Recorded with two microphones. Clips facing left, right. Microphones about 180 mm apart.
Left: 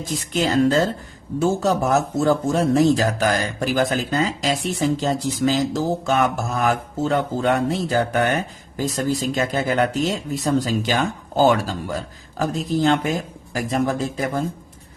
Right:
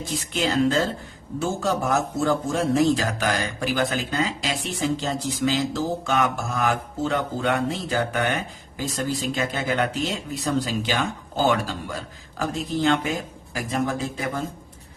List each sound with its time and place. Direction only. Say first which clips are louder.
0.3 s speech: left 4 dB; 40° left (ahead or behind)